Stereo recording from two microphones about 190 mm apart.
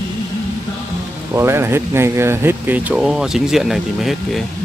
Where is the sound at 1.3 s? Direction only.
15° right (ahead or behind).